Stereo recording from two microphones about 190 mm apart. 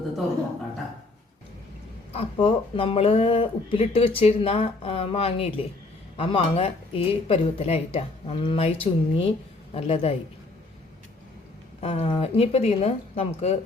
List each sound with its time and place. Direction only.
2.1 s a woman's voice: 30° left (ahead or behind)
11.8 s speech: 30° left (ahead or behind)